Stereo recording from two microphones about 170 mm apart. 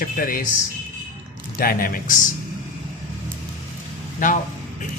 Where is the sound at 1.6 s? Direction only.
60° left (ahead or behind).